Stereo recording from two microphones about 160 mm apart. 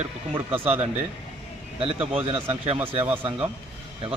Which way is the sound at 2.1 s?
35° right (ahead or behind).